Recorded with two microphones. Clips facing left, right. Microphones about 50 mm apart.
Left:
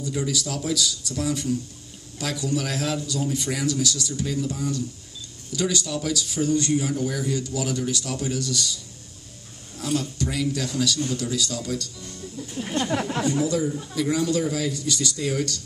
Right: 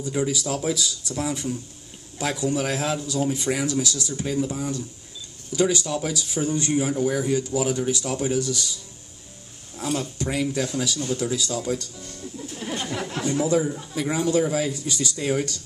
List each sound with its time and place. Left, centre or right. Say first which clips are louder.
0.0 s speech: right 2 dB; right
9.9 s speech: left 1 dB; right